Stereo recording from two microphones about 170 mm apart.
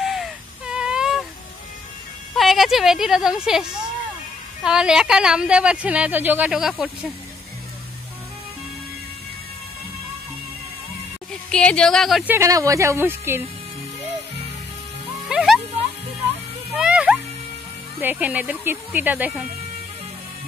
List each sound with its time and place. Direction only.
0.0 s a sound: centre (ahead or behind)
2.3 s speech: centre (ahead or behind)
4.6 s speech: 5° right (ahead or behind)
11.5 s speech: 5° left (ahead or behind)
12.4 s speech: 20° right (ahead or behind)
15.2 s music: 5° right (ahead or behind)
16.7 s music: 5° right (ahead or behind)
18.0 s speech: 10° right (ahead or behind)